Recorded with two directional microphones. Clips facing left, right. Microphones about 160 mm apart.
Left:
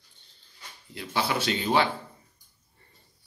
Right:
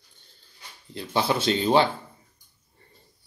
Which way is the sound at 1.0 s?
30° right (ahead or behind).